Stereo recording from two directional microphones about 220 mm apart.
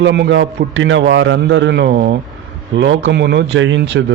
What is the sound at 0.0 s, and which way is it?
A man's voice, 55° right (ahead or behind).